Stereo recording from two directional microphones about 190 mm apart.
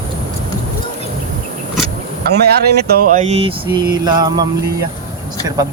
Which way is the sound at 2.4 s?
55° right (ahead or behind).